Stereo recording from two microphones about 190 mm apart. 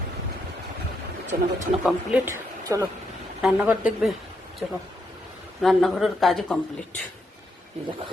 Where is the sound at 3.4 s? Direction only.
5° right (ahead or behind).